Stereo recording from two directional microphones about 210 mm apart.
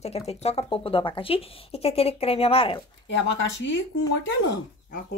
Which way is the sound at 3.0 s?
60° left (ahead or behind).